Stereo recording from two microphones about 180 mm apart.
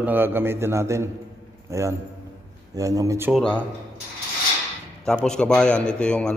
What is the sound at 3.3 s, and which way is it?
Speech, 5° left (ahead or behind).